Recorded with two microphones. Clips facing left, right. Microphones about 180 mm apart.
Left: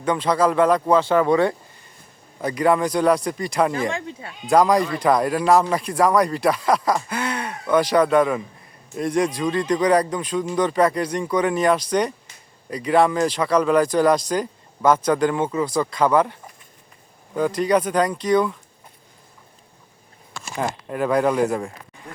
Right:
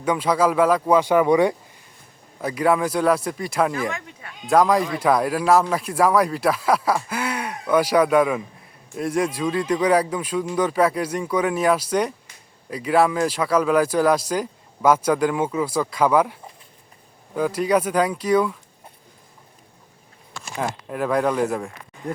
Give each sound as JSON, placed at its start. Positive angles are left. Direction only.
{"t": 0.0, "sound": "speech", "side_deg": -10}
{"t": 3.7, "sound": "speech", "side_deg": 30}
{"t": 4.4, "sound": "speech", "side_deg": 0}
{"t": 20.6, "sound": "speech", "side_deg": 0}